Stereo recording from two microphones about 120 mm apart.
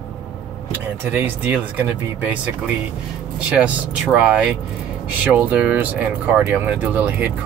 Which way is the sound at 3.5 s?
10° right (ahead or behind).